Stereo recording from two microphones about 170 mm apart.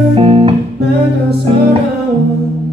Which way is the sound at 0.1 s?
35° right (ahead or behind).